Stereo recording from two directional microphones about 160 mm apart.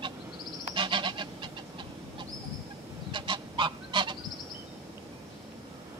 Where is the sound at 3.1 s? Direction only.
30° right (ahead or behind).